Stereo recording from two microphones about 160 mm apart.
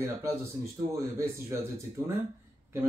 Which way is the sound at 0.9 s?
15° right (ahead or behind).